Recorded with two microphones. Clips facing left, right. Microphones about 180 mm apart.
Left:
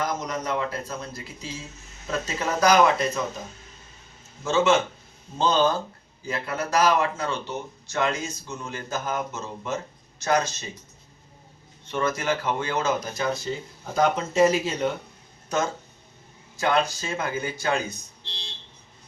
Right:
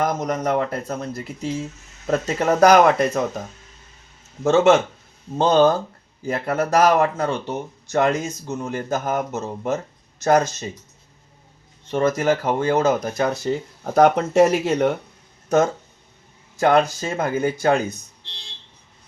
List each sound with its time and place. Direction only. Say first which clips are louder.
0.0 s speech: right 6 dB; 55° right (ahead or behind)
5.4 s speech: right 6 dB; 55° right (ahead or behind)
11.9 s speech: right 7 dB; 45° right (ahead or behind); by 14.9 s 65° right (ahead or behind)
15.4 s speech: right 8 dB; 50° right (ahead or behind)